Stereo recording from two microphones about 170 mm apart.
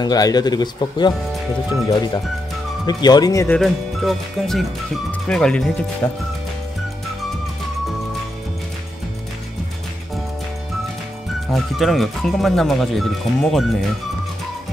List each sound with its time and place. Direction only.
0.0 s speech: 25° left (ahead or behind)
2.9 s speech: 25° left (ahead or behind)
3.5 s speech: centre (ahead or behind)
11.5 s speech: centre (ahead or behind)